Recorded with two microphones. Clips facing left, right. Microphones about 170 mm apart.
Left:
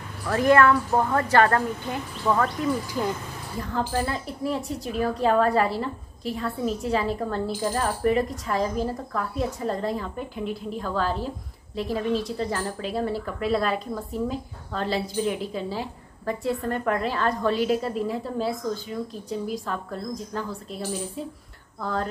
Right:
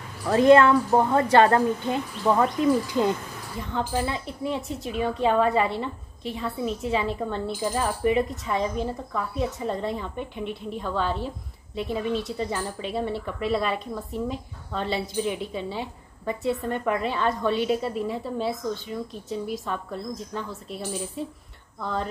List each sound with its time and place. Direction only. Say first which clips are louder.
0.3 s speech: right 3 dB; 20° right (ahead or behind)
3.5 s a woman's voice: left 1 dB; centre (ahead or behind)